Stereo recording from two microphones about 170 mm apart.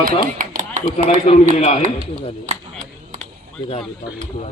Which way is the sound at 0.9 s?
45° left (ahead or behind).